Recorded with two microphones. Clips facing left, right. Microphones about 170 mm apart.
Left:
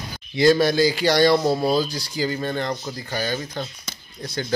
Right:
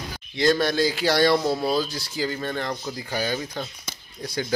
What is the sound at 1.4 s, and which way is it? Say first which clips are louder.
Speech: left 3 dB; 10° left (ahead or behind).